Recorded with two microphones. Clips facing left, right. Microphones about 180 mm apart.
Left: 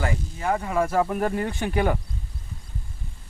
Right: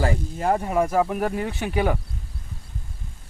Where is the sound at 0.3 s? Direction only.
35° right (ahead or behind).